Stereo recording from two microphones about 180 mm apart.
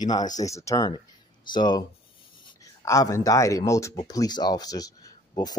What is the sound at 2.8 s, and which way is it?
Speech, 15° left (ahead or behind).